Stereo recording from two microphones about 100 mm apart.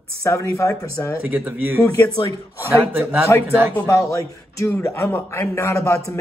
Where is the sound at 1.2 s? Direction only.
20° right (ahead or behind).